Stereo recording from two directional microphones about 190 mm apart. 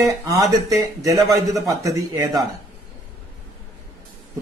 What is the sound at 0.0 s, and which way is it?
Speech, 15° right (ahead or behind).